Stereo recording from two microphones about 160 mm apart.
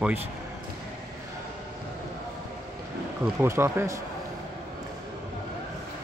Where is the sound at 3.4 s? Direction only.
15° right (ahead or behind).